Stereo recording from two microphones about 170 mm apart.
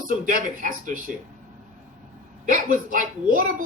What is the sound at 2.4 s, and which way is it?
Speech, 55° right (ahead or behind).